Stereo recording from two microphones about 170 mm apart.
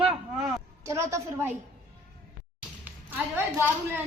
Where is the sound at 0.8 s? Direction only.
15° right (ahead or behind).